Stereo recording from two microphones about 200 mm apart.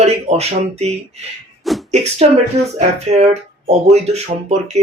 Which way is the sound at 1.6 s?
Centre (ahead or behind).